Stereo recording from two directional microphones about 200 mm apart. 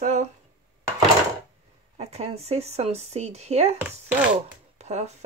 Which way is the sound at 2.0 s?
30° right (ahead or behind).